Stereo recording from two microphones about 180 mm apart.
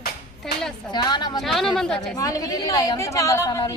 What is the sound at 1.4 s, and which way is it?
Speech, centre (ahead or behind).